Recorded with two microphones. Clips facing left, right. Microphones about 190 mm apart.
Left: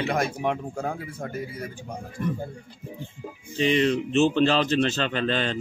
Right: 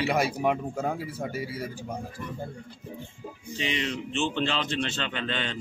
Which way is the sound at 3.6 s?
50° left (ahead or behind).